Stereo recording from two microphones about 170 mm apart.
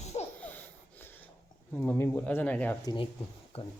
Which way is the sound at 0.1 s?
30° left (ahead or behind).